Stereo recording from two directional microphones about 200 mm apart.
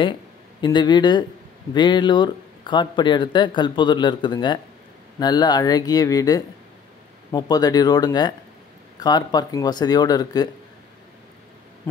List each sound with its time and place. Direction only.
0.6 s speech: 20° left (ahead or behind)